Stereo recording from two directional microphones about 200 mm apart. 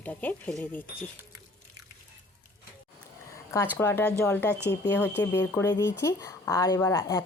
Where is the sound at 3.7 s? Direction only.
10° left (ahead or behind).